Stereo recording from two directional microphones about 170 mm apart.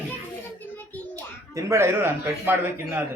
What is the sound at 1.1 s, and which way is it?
Speech, 20° right (ahead or behind).